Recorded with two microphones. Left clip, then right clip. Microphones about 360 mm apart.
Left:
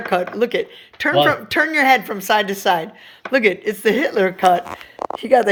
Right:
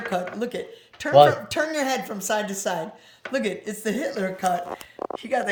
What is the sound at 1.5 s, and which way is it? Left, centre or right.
Speech, centre.